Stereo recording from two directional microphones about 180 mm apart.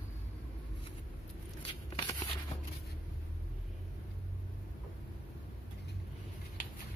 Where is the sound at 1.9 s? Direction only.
25° left (ahead or behind).